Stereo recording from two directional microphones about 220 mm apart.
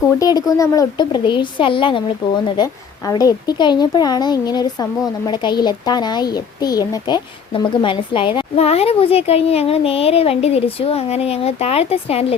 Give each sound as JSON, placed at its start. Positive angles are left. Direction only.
{"t": 0.2, "sound": "a woman's voice", "side_deg": 15}